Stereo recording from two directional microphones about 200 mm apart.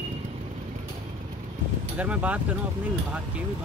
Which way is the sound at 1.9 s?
5° right (ahead or behind).